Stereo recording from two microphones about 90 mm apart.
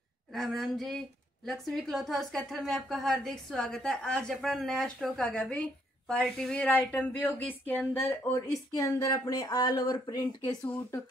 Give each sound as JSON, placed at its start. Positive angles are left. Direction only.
{"t": 0.3, "sound": "a woman's voice", "side_deg": 0}
{"t": 6.7, "sound": "speech", "side_deg": 20}